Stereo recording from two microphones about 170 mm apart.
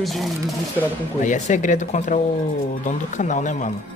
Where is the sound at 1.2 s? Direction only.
50° left (ahead or behind).